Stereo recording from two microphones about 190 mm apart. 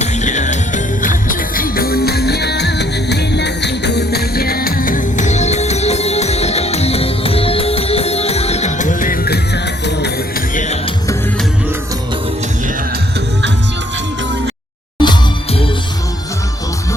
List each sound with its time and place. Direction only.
0.0 s music: 40° left (ahead or behind)
10.5 s music: 40° left (ahead or behind)
15.0 s music: 25° left (ahead or behind)